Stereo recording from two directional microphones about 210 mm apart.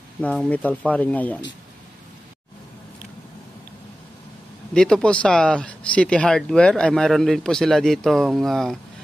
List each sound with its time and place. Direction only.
0.2 s speech: 5° left (ahead or behind)
4.7 s speech: 5° left (ahead or behind)